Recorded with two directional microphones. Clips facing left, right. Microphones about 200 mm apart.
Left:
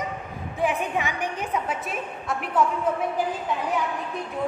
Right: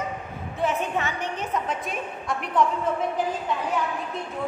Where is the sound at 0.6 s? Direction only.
10° left (ahead or behind).